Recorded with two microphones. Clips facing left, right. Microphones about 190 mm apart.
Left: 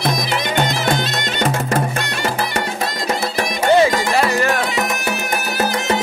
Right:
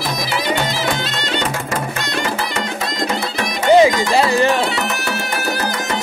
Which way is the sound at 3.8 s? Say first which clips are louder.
Right 2 dB; 20° right (ahead or behind).